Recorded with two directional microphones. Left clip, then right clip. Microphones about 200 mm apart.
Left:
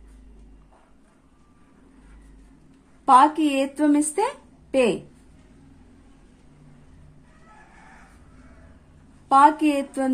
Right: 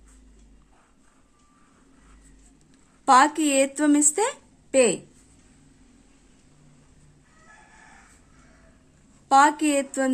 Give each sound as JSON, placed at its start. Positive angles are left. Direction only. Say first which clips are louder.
{"t": 3.1, "sound": "a woman's voice", "louder": "left 2 dB", "side_deg": -30}
{"t": 9.3, "sound": "a woman's voice", "louder": "left 2 dB", "side_deg": -25}